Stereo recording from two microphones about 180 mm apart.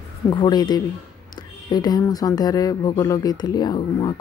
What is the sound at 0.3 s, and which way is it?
Speech, 25° left (ahead or behind).